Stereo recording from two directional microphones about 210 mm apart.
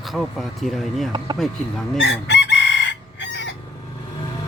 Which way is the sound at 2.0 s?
60° left (ahead or behind).